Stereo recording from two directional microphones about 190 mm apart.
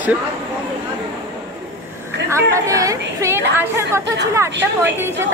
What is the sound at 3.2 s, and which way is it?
A woman's voice, 15° right (ahead or behind).